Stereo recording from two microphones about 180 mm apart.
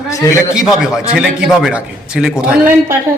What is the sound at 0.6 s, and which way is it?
A man's voice, 5° right (ahead or behind).